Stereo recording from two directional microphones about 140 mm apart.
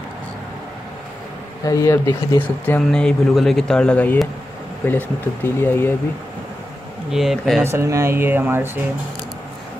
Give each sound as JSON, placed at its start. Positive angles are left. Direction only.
{"t": 1.6, "sound": "speech", "side_deg": 25}
{"t": 7.1, "sound": "speech", "side_deg": 0}
{"t": 7.6, "sound": "speech", "side_deg": -20}